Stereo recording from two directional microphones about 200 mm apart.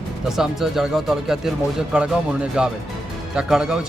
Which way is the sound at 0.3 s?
Centre (ahead or behind).